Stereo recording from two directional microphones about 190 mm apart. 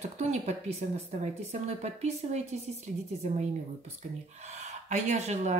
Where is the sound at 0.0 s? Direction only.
35° right (ahead or behind).